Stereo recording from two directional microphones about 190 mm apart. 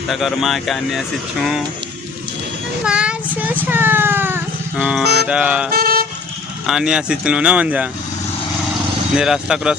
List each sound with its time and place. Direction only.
0.1 s speech: centre (ahead or behind)
2.8 s a child's voice: 5° right (ahead or behind)
5.7 s vehicle: 50° right (ahead or behind)
6.7 s speech: 5° right (ahead or behind)
9.1 s speech: 5° right (ahead or behind)